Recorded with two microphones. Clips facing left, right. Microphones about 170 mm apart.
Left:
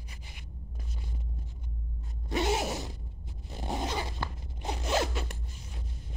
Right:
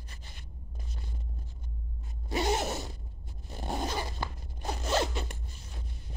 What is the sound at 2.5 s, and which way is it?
Zipper, 15° left (ahead or behind).